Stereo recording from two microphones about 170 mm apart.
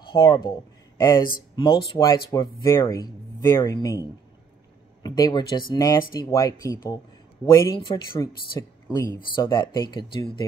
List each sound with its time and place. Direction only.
0.0 s speech: 30° left (ahead or behind)